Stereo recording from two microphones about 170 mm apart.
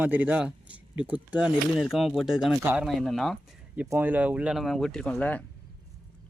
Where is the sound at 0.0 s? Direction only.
10° right (ahead or behind).